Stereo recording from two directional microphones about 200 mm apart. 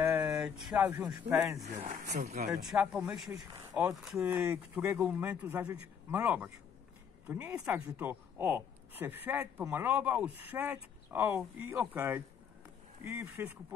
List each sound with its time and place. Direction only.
0.0 s a sound: 10° right (ahead or behind)
1.3 s a woman's voice: 15° right (ahead or behind)
1.6 s speech: 35° right (ahead or behind)
2.6 s a woman's voice: 5° right (ahead or behind)